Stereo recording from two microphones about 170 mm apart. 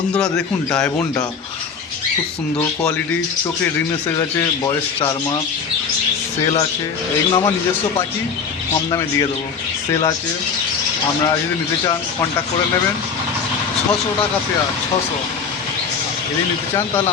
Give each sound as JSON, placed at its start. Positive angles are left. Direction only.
{"t": 0.1, "sound": "speech", "side_deg": 5}
{"t": 2.6, "sound": "speech", "side_deg": 10}
{"t": 7.3, "sound": "speech", "side_deg": 25}
{"t": 8.9, "sound": "speech", "side_deg": 20}